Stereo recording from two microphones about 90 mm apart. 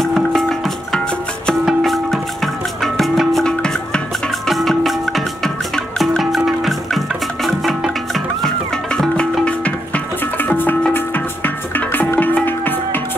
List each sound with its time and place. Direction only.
0.0 s music: centre (ahead or behind); by 13.0 s 20° left (ahead or behind)